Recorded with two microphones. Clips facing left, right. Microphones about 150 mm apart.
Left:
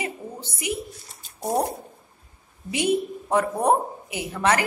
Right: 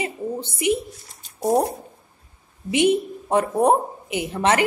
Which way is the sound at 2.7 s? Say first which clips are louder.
Right 4 dB; 25° right (ahead or behind).